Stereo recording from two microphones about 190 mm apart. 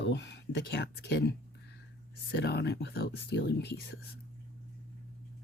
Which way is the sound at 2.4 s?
60° left (ahead or behind).